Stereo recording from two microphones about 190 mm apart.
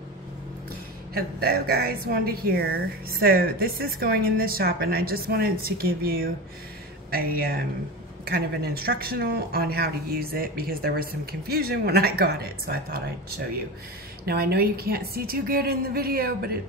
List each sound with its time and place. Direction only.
1.1 s a woman's voice: 55° right (ahead or behind)
14.2 s a woman's voice: 55° right (ahead or behind)